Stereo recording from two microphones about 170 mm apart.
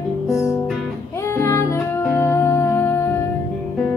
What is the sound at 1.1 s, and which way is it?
Music, 15° left (ahead or behind).